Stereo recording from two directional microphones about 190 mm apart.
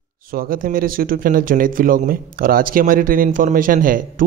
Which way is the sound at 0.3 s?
50° right (ahead or behind).